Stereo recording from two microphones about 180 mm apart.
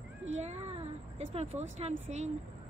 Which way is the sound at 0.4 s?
35° right (ahead or behind).